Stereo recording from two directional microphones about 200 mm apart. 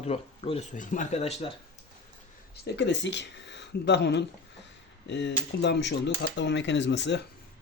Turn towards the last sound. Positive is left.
turn(degrees=60)  # may be behind; listen again after turning